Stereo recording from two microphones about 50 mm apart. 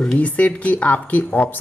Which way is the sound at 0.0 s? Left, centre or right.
Left.